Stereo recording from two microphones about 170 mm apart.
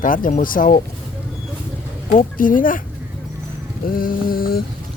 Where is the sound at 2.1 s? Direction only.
55° left (ahead or behind).